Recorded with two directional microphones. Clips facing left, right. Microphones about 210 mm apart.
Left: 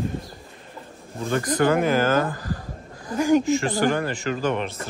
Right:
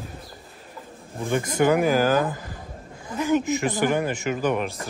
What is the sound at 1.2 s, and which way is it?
Speech, 15° right (ahead or behind).